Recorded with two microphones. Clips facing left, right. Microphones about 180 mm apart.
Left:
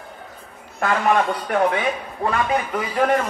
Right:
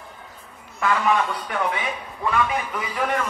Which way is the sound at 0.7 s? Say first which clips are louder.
Left 2 dB; 50° left (ahead or behind).